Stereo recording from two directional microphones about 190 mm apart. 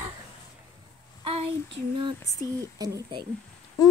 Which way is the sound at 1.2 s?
30° right (ahead or behind).